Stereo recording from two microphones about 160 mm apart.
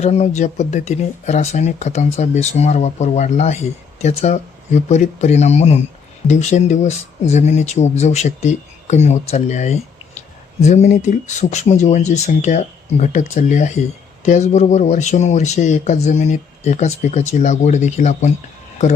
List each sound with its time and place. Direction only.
0.0 s speech: 45° left (ahead or behind)